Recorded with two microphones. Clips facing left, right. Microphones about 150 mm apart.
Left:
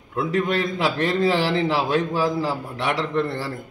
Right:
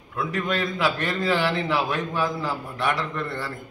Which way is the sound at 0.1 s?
25° left (ahead or behind).